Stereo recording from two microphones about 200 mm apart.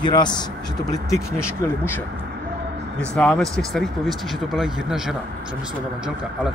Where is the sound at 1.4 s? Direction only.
10° left (ahead or behind).